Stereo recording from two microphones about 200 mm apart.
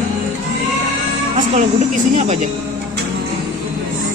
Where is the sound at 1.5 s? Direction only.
35° right (ahead or behind).